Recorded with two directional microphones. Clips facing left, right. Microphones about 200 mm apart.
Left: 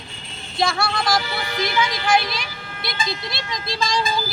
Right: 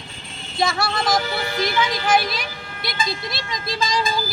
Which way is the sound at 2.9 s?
50° right (ahead or behind).